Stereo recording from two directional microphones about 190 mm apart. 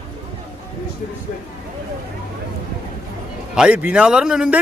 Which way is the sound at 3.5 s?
5° right (ahead or behind).